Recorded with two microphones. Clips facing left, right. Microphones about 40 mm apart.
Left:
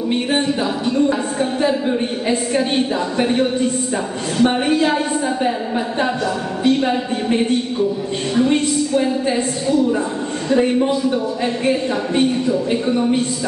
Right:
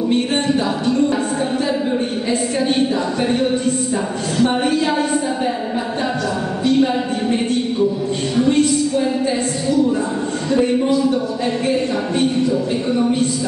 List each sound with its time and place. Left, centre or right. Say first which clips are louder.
0.8 s music: left 1 dB; centre
2.2 s a woman's voice: left 1 dB; centre
4.4 s a woman's voice: left 1 dB; left
6.6 s speech: right 1 dB; centre
8.4 s a sound: right 1 dB; left
10.6 s a woman's voice: right 2 dB; left